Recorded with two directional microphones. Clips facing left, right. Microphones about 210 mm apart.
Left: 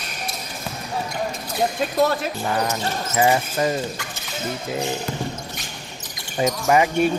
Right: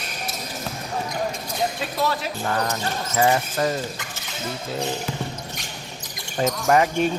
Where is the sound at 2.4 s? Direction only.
10° left (ahead or behind).